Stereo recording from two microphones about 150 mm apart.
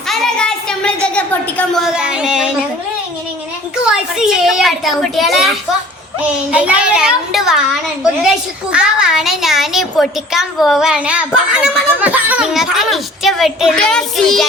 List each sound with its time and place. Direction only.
0.1 s a sound: 5° left (ahead or behind)
1.8 s speech: 5° right (ahead or behind)
3.8 s speech: 5° right (ahead or behind)
8.7 s speech: 5° right (ahead or behind)